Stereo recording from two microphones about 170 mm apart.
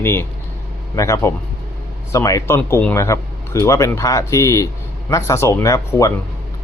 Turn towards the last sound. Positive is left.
turn(degrees=20)  # may be behind; listen again after turning